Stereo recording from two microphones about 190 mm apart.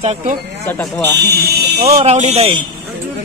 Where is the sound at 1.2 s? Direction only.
60° right (ahead or behind).